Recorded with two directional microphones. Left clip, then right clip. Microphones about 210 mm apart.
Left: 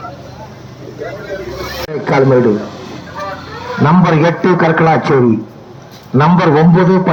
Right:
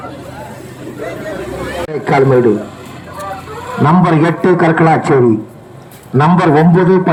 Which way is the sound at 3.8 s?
35° right (ahead or behind).